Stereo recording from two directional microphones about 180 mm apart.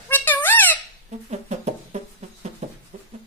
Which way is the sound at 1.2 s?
40° right (ahead or behind).